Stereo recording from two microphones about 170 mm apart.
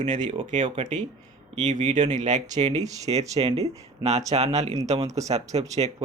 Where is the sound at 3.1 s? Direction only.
40° right (ahead or behind).